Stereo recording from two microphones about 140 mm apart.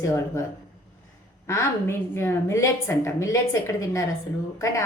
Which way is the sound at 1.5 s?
20° left (ahead or behind).